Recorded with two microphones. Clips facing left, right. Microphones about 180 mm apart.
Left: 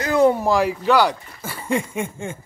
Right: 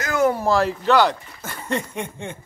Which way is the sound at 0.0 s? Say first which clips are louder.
Left 4 dB; 30° left (ahead or behind).